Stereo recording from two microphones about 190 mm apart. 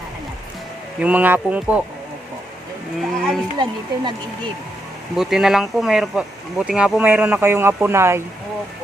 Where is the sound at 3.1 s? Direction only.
Centre (ahead or behind).